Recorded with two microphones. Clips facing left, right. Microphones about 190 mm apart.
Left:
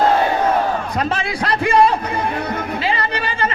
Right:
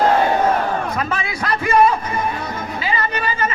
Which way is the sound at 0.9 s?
30° left (ahead or behind).